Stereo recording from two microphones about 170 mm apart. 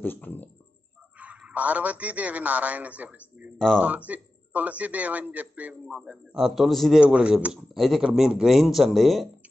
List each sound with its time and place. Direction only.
0.0 s speech: 10° left (ahead or behind)
1.1 s a man's voice: 5° right (ahead or behind)
3.5 s speech: 5° left (ahead or behind)
3.8 s speech: 10° right (ahead or behind)